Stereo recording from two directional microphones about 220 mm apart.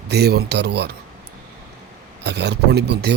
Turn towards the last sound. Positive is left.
turn(degrees=-50)  # may be behind; listen again after turning